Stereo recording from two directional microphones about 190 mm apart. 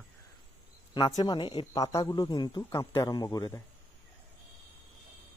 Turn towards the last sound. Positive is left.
turn(degrees=20)  # may be behind; listen again after turning